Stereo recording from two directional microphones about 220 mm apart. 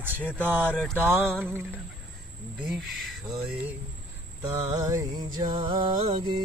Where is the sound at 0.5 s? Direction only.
10° right (ahead or behind).